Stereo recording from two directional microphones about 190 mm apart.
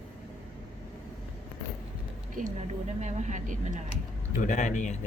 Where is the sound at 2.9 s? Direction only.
40° right (ahead or behind).